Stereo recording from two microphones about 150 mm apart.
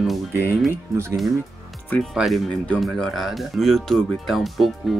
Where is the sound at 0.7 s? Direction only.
20° right (ahead or behind).